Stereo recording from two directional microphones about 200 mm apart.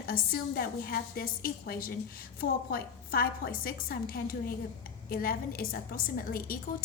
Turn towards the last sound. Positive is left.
turn(degrees=45)  # may be behind; listen again after turning